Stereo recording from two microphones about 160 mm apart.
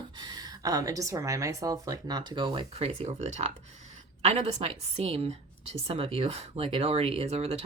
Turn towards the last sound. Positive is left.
turn(degrees=-40)  # may be behind; listen again after turning